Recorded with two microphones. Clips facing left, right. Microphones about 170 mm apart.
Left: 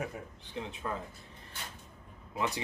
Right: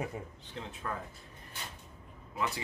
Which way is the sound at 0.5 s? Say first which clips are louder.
Left 2 dB; 15° left (ahead or behind).